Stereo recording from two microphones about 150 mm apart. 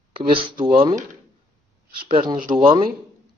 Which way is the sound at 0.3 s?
35° right (ahead or behind).